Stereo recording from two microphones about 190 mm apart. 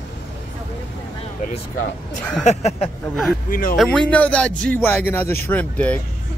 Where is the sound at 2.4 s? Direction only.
35° left (ahead or behind).